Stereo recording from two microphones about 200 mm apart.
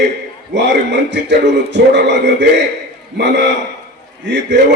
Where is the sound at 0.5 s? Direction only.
60° right (ahead or behind).